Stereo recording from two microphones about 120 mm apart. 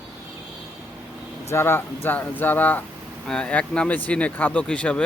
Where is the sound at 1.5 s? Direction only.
20° left (ahead or behind).